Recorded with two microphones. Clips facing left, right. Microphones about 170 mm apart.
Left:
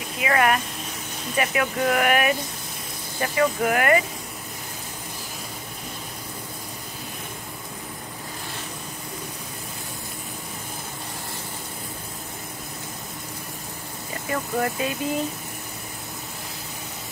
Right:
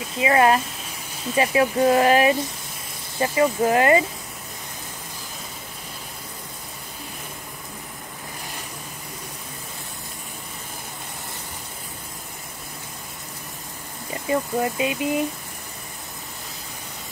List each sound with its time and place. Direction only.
0.2 s speech: 25° right (ahead or behind)
14.3 s speech: 20° right (ahead or behind)